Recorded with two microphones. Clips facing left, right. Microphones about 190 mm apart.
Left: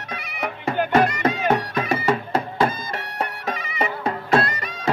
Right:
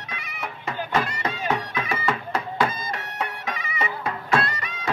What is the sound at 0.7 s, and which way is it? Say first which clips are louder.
Music: left 8 dB; 60° left (ahead or behind).